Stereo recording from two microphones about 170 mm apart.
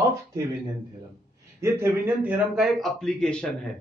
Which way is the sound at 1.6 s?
15° right (ahead or behind).